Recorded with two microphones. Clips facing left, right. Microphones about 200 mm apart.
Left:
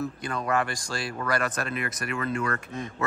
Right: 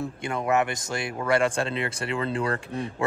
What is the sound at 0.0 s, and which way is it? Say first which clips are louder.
Speech: right 2 dB; 25° right (ahead or behind).